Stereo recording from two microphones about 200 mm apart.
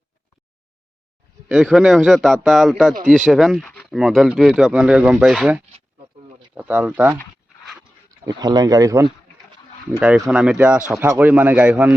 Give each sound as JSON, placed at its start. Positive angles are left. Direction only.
{"t": 1.5, "sound": "speech", "side_deg": 0}
{"t": 8.2, "sound": "speech", "side_deg": -20}
{"t": 10.0, "sound": "speech", "side_deg": -5}